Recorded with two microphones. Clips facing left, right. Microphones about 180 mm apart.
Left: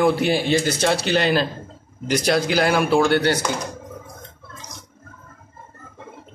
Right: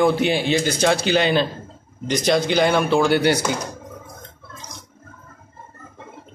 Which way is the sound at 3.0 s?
10° right (ahead or behind).